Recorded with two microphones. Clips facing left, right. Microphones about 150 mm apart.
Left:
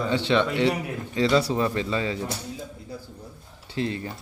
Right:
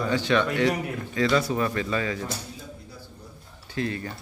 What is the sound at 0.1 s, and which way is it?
Speech, 25° left (ahead or behind).